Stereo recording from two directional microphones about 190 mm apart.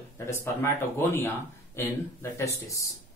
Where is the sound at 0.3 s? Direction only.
15° left (ahead or behind).